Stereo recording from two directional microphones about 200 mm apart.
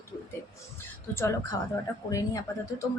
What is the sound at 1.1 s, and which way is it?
Speech, 15° left (ahead or behind).